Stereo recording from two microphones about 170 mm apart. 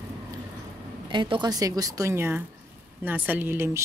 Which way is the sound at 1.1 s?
30° right (ahead or behind).